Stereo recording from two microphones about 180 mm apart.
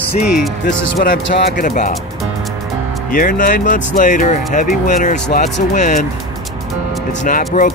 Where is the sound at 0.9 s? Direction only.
50° left (ahead or behind).